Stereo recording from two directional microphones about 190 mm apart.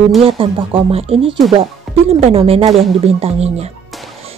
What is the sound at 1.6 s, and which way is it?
Music, 30° right (ahead or behind).